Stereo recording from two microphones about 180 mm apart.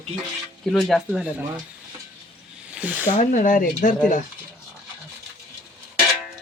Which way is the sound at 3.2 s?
45° left (ahead or behind).